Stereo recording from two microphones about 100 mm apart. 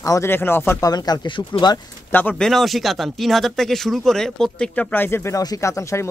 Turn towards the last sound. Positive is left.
turn(degrees=30)  # may be behind; listen again after turning